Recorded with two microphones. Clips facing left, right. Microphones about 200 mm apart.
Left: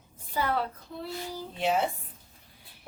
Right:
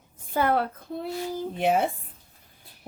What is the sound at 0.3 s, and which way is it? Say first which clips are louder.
A woman's voice: right 5 dB; 55° right (ahead or behind).